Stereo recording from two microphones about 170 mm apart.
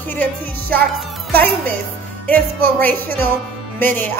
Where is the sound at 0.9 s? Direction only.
Centre (ahead or behind).